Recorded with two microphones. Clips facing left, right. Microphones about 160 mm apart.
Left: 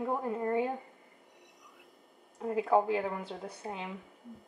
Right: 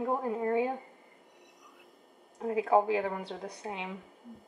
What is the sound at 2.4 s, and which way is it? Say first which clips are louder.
A woman's voice: right 1 dB; 5° right (ahead or behind).